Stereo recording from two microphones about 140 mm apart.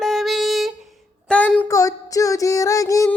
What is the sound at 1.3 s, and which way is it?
Child singing, 10° left (ahead or behind).